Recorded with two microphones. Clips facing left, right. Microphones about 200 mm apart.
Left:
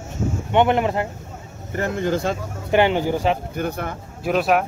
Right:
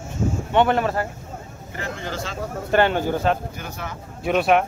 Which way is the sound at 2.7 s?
15° left (ahead or behind).